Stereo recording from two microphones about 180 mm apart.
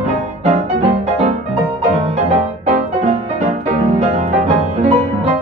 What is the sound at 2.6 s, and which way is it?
Music, 40° right (ahead or behind).